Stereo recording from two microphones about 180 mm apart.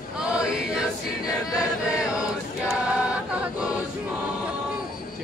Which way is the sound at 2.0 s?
5° right (ahead or behind).